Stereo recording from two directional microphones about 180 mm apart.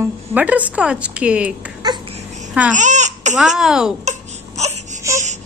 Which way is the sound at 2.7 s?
40° right (ahead or behind).